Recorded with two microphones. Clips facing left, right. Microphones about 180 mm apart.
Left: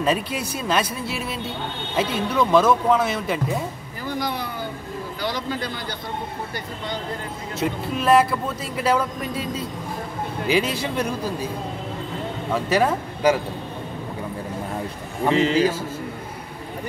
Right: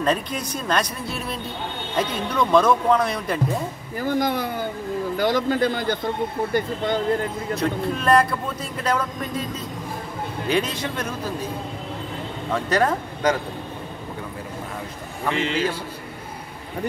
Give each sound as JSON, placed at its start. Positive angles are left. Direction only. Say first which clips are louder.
{"t": 0.0, "sound": "speech", "louder": "even", "side_deg": 5}
{"t": 4.0, "sound": "a man's voice", "louder": "right 5 dB", "side_deg": -50}
{"t": 7.5, "sound": "speech", "louder": "even", "side_deg": 5}
{"t": 10.5, "sound": "speech", "louder": "left 2 dB", "side_deg": 10}
{"t": 12.4, "sound": "speech", "louder": "left 1 dB", "side_deg": 5}
{"t": 15.2, "sound": "a man's voice", "louder": "left 5 dB", "side_deg": 35}